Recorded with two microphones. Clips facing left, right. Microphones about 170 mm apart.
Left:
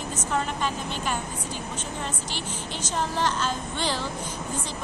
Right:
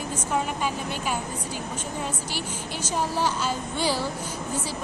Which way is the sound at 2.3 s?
10° right (ahead or behind).